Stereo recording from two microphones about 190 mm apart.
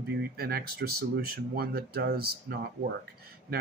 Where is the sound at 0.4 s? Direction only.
55° right (ahead or behind).